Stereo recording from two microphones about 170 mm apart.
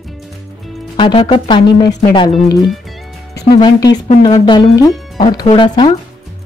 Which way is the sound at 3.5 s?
25° left (ahead or behind).